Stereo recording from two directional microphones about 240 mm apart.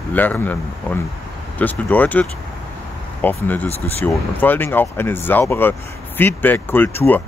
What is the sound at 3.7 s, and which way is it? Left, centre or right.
Speech, left.